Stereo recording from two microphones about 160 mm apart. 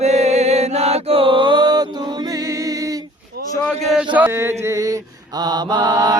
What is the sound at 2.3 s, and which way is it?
Music, 20° right (ahead or behind).